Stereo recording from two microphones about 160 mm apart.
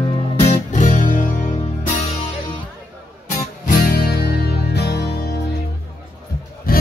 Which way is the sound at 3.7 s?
70° left (ahead or behind).